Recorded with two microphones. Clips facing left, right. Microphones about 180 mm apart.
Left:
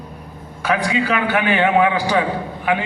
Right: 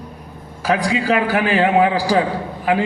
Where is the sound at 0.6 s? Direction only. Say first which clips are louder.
Right 1 dB; 35° right (ahead or behind).